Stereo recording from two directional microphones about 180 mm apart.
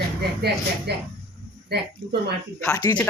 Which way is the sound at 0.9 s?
65° right (ahead or behind).